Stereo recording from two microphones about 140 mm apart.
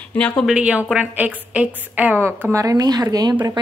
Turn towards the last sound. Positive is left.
turn(degrees=-30)  # may be behind; listen again after turning